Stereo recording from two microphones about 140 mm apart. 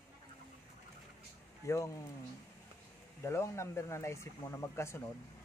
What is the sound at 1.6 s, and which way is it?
Speech, 20° left (ahead or behind).